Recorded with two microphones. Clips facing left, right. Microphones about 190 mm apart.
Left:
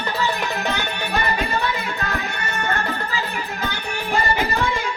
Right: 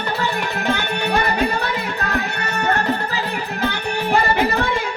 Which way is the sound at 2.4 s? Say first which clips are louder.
Right 5 dB; 65° right (ahead or behind).